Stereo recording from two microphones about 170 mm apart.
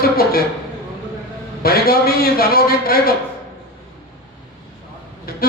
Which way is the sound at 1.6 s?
65° left (ahead or behind).